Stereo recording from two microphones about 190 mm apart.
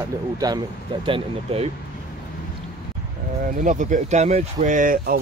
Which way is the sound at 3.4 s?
40° right (ahead or behind).